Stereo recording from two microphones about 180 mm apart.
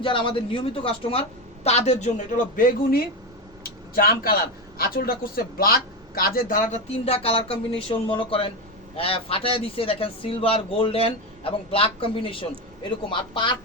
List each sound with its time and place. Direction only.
0.0 s a man's voice: 30° left (ahead or behind); by 3.0 s 50° left (ahead or behind)
3.6 s a sound: 55° left (ahead or behind)
4.8 s a man's voice: 55° left (ahead or behind); by 13.6 s 25° left (ahead or behind)